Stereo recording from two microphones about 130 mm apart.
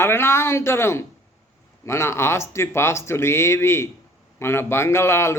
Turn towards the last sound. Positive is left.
turn(degrees=20)  # may be behind; listen again after turning